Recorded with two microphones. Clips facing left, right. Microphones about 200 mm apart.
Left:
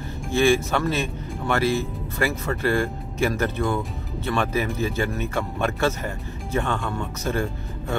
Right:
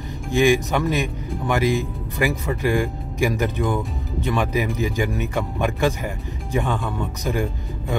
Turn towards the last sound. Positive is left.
turn(degrees=-15)  # may be behind; listen again after turning